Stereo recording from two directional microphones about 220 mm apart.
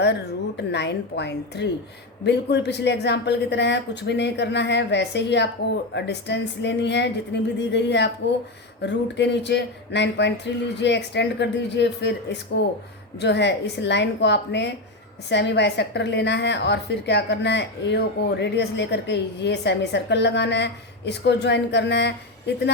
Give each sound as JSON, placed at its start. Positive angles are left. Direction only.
{"t": 0.0, "sound": "a woman's voice", "side_deg": 50}